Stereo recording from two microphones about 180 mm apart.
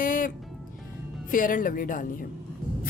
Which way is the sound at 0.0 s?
50° left (ahead or behind).